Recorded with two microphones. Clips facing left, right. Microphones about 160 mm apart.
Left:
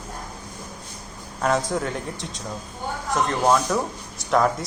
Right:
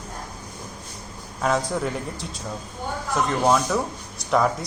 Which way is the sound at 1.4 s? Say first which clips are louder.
Even; centre (ahead or behind).